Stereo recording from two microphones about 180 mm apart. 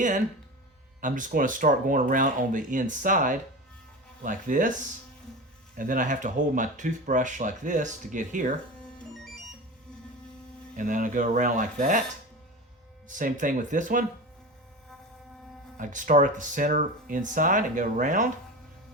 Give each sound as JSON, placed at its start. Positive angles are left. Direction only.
{"t": 1.0, "sound": "speech", "side_deg": -45}
{"t": 5.7, "sound": "speech", "side_deg": -50}
{"t": 10.8, "sound": "speech", "side_deg": -45}
{"t": 13.1, "sound": "speech", "side_deg": -45}
{"t": 15.8, "sound": "speech", "side_deg": -45}